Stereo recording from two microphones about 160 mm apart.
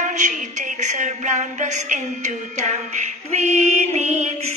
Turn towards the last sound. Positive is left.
turn(degrees=-45)  # may be behind; listen again after turning